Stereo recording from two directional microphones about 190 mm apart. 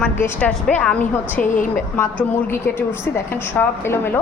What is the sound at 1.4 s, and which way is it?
Speech, 45° left (ahead or behind).